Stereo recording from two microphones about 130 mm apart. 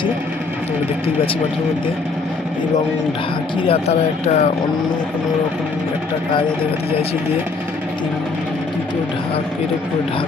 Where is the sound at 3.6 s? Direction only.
50° left (ahead or behind).